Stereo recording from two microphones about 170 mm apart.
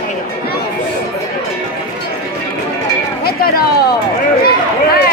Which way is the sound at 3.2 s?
65° left (ahead or behind).